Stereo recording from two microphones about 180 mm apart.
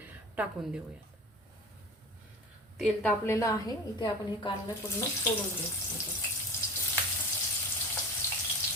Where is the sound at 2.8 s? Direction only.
10° left (ahead or behind); by 4.6 s 25° left (ahead or behind).